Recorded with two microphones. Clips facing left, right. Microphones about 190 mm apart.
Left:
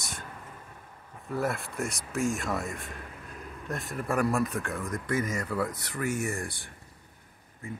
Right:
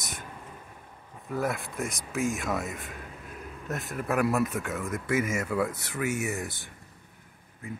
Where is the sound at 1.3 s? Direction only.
Centre (ahead or behind).